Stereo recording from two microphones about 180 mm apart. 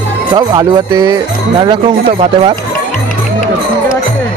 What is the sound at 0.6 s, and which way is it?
Speech, 20° right (ahead or behind).